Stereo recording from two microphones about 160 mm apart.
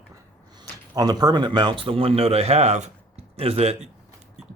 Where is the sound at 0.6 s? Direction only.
25° right (ahead or behind).